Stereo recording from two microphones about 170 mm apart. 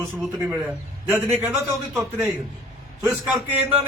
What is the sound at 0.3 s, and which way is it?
Speech, 10° right (ahead or behind).